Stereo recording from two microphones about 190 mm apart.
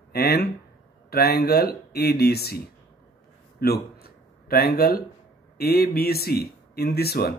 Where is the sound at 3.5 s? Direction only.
55° left (ahead or behind).